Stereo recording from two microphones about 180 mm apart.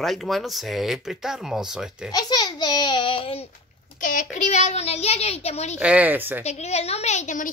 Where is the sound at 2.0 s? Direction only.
20° left (ahead or behind).